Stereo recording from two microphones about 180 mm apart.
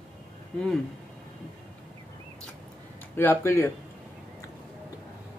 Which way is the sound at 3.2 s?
10° left (ahead or behind).